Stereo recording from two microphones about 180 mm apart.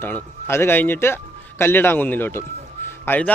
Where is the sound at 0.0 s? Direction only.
15° left (ahead or behind).